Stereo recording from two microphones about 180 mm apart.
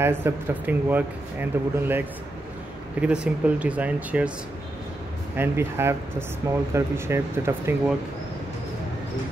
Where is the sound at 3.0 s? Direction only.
5° right (ahead or behind).